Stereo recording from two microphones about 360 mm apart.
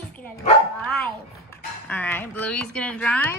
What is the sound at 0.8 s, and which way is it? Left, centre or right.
A woman's voice, centre.